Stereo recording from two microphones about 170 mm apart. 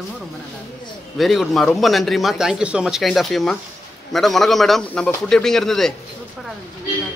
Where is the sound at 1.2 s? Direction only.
Centre (ahead or behind).